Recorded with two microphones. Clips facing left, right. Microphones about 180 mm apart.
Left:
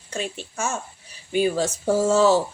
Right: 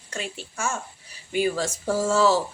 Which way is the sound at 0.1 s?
20° left (ahead or behind).